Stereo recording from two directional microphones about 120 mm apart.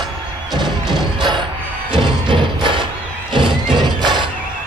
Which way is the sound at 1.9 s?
40° right (ahead or behind).